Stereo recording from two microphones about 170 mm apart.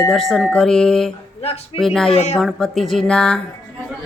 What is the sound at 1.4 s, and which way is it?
Speech, 35° left (ahead or behind).